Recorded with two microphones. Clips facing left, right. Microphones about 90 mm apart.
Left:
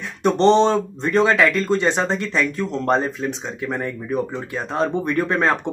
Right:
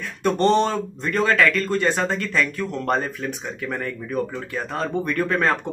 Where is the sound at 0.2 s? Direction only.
20° left (ahead or behind).